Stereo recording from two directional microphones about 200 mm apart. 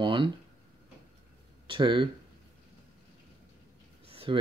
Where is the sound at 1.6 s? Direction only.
25° right (ahead or behind).